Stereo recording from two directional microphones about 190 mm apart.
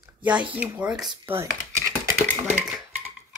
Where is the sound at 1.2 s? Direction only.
15° right (ahead or behind).